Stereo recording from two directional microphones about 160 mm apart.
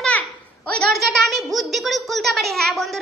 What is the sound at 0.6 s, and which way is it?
A woman's voice, 5° left (ahead or behind).